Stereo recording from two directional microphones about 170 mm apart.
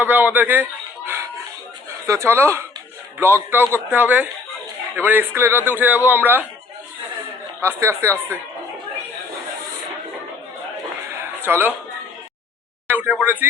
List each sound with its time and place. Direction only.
0.0 s a sound: 10° right (ahead or behind)
2.0 s a man's voice: 15° right (ahead or behind)
7.6 s a man's voice: 15° right (ahead or behind)
11.2 s music: 10° right (ahead or behind)
12.9 s speech: 10° right (ahead or behind)